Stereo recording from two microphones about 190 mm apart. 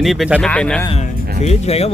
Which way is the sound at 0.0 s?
Centre (ahead or behind).